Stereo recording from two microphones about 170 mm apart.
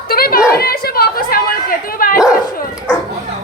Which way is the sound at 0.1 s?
60° left (ahead or behind).